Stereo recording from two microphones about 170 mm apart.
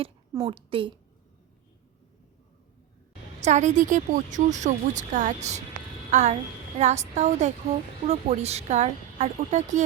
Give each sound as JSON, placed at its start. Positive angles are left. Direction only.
{"t": 0.4, "sound": "a woman's voice", "side_deg": -30}
{"t": 3.4, "sound": "a child's voice", "side_deg": -45}